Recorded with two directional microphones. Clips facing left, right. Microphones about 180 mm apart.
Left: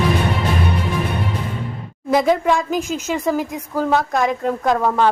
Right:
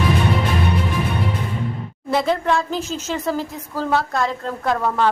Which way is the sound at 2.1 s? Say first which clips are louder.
Left 3 dB; 15° left (ahead or behind).